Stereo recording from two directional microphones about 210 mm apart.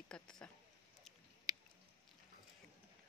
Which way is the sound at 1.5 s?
15° right (ahead or behind).